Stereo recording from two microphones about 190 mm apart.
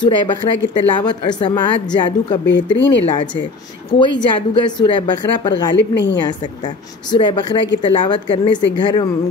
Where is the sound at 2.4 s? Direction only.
70° left (ahead or behind).